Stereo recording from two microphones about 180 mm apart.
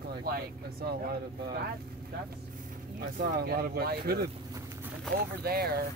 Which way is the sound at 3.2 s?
55° right (ahead or behind).